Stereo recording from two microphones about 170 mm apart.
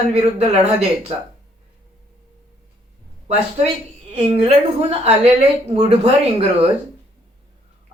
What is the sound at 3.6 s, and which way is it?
Speech, 40° right (ahead or behind).